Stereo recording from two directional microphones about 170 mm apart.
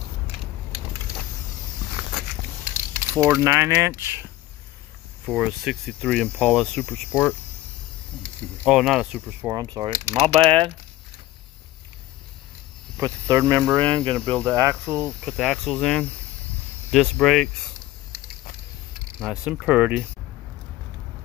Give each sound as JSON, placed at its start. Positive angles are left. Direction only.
{"t": 2.6, "sound": "speech", "side_deg": -15}
{"t": 5.2, "sound": "speech", "side_deg": -5}
{"t": 8.6, "sound": "speech", "side_deg": -5}
{"t": 9.6, "sound": "speech", "side_deg": -20}
{"t": 10.1, "sound": "speech", "side_deg": -35}
{"t": 13.0, "sound": "speech", "side_deg": -20}
{"t": 14.3, "sound": "speech", "side_deg": 5}
{"t": 14.6, "sound": "speech", "side_deg": -15}
{"t": 15.0, "sound": "speech", "side_deg": 0}
{"t": 19.1, "sound": "speech", "side_deg": -5}